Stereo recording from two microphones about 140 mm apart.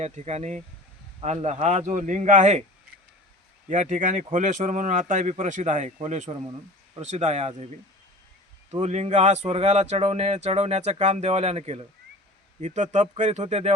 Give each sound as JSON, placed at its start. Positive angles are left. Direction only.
{"t": 0.0, "sound": "speech", "side_deg": -50}
{"t": 3.7, "sound": "speech", "side_deg": -60}
{"t": 8.7, "sound": "speech", "side_deg": -50}